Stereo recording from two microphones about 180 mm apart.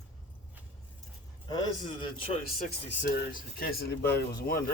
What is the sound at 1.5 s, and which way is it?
Speech, 25° left (ahead or behind).